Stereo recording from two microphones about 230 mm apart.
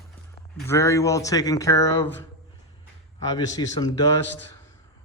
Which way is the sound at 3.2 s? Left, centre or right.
Centre.